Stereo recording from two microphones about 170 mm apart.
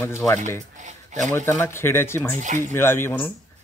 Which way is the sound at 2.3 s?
45° right (ahead or behind).